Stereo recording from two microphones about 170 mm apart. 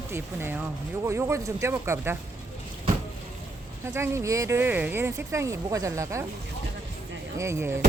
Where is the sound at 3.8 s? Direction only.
15° right (ahead or behind).